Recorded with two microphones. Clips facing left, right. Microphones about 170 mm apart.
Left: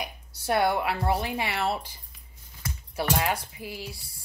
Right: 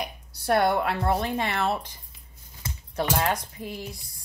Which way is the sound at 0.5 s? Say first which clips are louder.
Right 2 dB; 55° right (ahead or behind).